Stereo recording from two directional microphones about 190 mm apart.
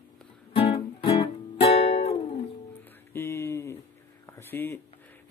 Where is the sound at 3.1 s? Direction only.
15° left (ahead or behind).